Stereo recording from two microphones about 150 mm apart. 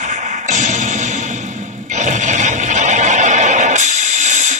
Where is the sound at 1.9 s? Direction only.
55° right (ahead or behind).